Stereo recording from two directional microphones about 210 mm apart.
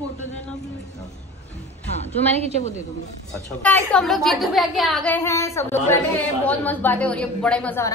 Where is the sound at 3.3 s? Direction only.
5° left (ahead or behind).